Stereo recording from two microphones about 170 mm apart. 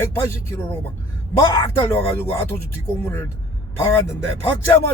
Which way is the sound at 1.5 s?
20° left (ahead or behind).